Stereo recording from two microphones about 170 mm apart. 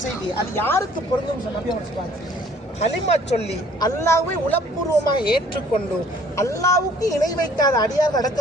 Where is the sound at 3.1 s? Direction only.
40° left (ahead or behind).